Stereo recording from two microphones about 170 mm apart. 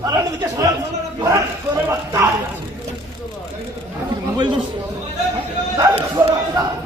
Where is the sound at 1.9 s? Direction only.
15° right (ahead or behind).